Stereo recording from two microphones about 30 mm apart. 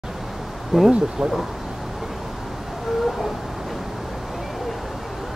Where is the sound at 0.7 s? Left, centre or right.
Centre.